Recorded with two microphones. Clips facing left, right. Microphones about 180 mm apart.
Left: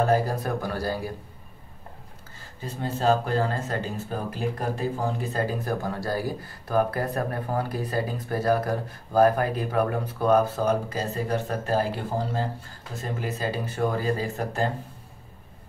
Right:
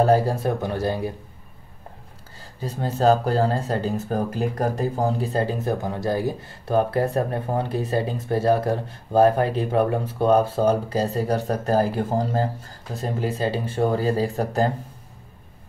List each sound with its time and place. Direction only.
0.0 s speech: 30° right (ahead or behind)
2.3 s speech: 40° right (ahead or behind)
12.9 s speech: 35° right (ahead or behind)